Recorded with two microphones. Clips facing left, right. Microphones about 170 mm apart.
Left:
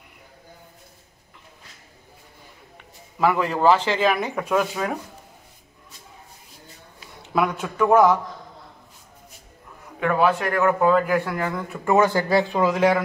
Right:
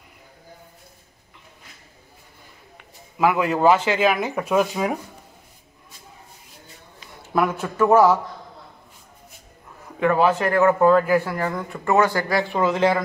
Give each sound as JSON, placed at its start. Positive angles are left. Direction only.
{"t": 3.2, "sound": "speech", "side_deg": -10}
{"t": 7.3, "sound": "a man's voice", "side_deg": 0}
{"t": 10.0, "sound": "speech", "side_deg": -10}
{"t": 10.8, "sound": "a man's voice", "side_deg": 0}
{"t": 11.9, "sound": "speech", "side_deg": 15}